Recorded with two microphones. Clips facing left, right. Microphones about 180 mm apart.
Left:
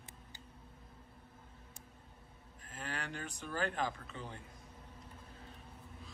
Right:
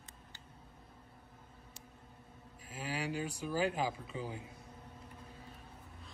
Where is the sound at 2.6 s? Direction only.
5° right (ahead or behind).